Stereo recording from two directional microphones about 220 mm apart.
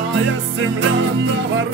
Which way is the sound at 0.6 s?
60° right (ahead or behind).